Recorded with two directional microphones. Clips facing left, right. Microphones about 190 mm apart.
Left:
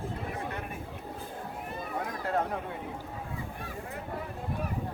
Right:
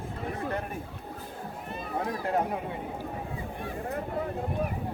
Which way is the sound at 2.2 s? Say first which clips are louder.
Right 1 dB; 15° right (ahead or behind).